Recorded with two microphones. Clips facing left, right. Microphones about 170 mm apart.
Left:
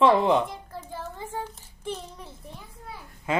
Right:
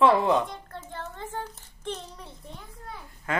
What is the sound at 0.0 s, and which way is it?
Speech, 25° left (ahead or behind).